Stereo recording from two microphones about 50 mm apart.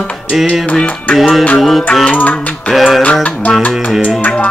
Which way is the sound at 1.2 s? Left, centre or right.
Centre.